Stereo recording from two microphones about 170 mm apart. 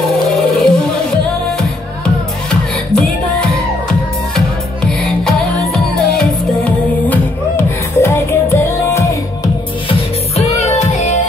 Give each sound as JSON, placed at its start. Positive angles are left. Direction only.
{"t": 0.4, "sound": "music", "side_deg": 0}
{"t": 2.9, "sound": "music", "side_deg": 5}
{"t": 4.8, "sound": "music", "side_deg": 5}
{"t": 9.8, "sound": "music", "side_deg": 40}